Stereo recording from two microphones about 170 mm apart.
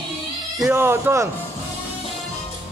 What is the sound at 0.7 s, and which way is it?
Speech, 15° right (ahead or behind).